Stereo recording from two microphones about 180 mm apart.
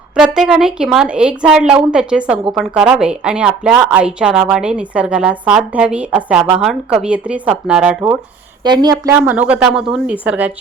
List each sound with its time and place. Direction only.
0.2 s a woman's voice: 5° right (ahead or behind)
8.6 s a woman's voice: 25° right (ahead or behind)
9.1 s speech: 10° right (ahead or behind)